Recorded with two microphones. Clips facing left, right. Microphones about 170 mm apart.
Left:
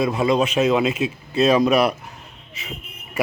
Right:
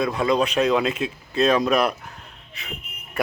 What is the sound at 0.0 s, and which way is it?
A man's voice, 5° left (ahead or behind).